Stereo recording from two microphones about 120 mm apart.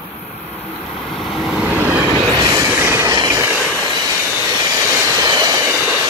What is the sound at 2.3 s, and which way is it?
Train, 30° right (ahead or behind).